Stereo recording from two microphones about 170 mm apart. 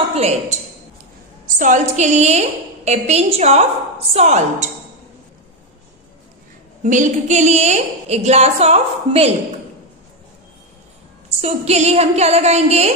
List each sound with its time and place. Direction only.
0.1 s a woman's voice: 40° right (ahead or behind)
1.6 s a woman's voice: 45° right (ahead or behind)
6.8 s a woman's voice: 50° right (ahead or behind)
11.4 s a woman's voice: 40° right (ahead or behind)